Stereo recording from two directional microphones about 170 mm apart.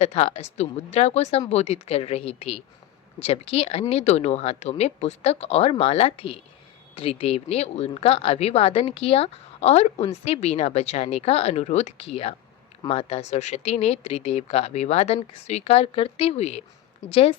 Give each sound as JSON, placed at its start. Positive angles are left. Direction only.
{"t": 0.0, "sound": "speech", "side_deg": 35}